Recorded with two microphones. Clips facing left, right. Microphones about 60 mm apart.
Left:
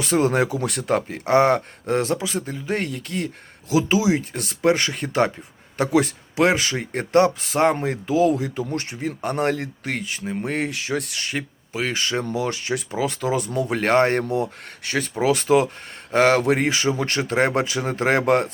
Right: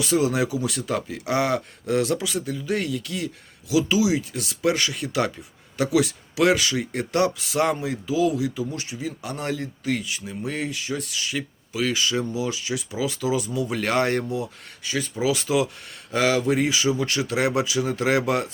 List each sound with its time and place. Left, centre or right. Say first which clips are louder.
0.0 s speech: left 2 dB; left
14.3 s speech: left 5 dB; left